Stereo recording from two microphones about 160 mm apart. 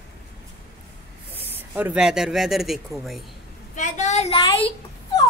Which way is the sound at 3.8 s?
45° left (ahead or behind).